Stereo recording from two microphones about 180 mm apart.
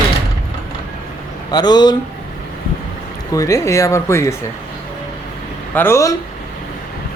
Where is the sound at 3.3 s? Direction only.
20° left (ahead or behind).